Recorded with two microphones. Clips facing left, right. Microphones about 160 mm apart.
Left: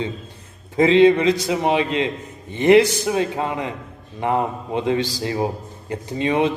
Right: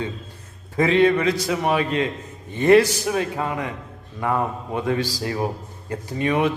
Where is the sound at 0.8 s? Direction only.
20° left (ahead or behind).